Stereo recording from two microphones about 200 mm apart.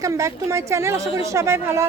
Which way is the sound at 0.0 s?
15° right (ahead or behind).